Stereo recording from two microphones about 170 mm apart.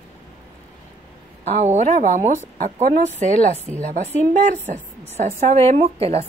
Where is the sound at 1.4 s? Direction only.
40° right (ahead or behind).